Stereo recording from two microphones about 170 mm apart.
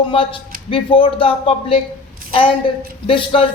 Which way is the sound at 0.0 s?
30° left (ahead or behind).